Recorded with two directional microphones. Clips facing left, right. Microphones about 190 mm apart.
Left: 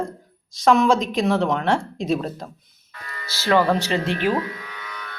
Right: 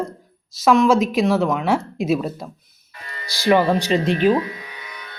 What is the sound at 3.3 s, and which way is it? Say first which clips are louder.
Speech: right 2 dB; 15° right (ahead or behind).